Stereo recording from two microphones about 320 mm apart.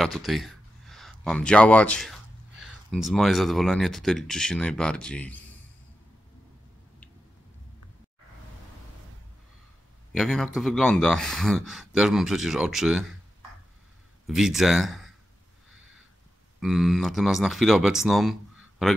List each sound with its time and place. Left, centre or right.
0.0 s speech: centre
10.1 s speech: centre
14.2 s speech: centre
16.5 s speech: centre